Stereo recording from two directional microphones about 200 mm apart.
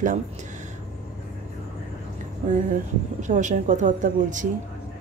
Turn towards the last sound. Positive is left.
turn(degrees=-40)  # may be behind; listen again after turning